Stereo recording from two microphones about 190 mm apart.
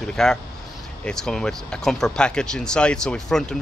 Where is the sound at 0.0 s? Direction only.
5° left (ahead or behind).